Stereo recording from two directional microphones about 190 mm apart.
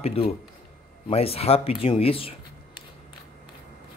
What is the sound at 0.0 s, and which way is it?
Speech, 30° left (ahead or behind).